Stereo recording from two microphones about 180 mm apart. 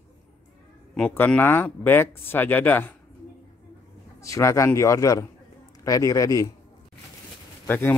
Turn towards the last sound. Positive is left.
turn(degrees=10)  # may be behind; listen again after turning